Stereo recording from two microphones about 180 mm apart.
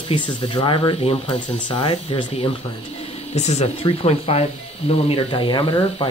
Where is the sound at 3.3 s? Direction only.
40° left (ahead or behind).